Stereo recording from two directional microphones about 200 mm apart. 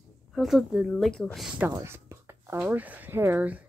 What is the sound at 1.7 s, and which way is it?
Speech, 15° right (ahead or behind).